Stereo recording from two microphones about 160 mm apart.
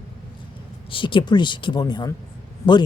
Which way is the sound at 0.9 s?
30° left (ahead or behind).